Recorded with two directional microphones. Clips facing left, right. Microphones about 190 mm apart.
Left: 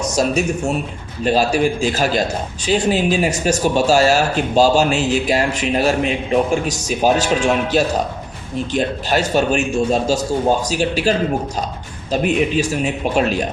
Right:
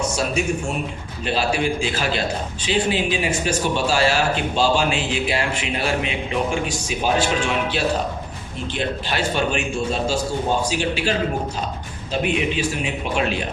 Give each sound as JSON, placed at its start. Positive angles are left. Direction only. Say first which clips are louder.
{"t": 0.2, "sound": "speech", "louder": "left 5 dB", "side_deg": 40}
{"t": 12.1, "sound": "speech", "louder": "left 5 dB", "side_deg": 40}